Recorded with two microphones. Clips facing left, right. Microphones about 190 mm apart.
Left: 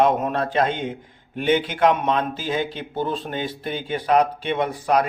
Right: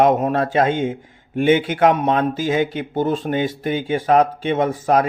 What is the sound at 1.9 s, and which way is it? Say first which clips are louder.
Speech: right 3 dB; 45° right (ahead or behind).